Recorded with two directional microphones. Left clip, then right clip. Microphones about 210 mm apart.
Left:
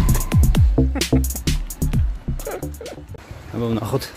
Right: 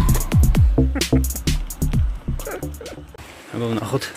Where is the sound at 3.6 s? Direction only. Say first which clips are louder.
Even; 20° left (ahead or behind).